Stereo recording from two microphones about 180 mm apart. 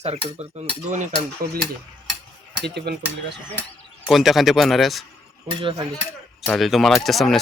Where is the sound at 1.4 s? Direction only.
55° right (ahead or behind).